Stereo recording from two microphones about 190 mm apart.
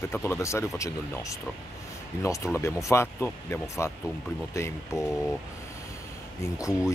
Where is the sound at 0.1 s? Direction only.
10° left (ahead or behind).